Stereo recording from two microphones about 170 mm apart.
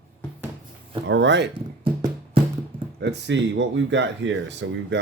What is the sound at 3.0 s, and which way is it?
Speech, 90° right.